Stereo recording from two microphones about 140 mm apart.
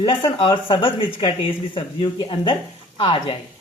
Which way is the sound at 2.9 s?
40° left (ahead or behind).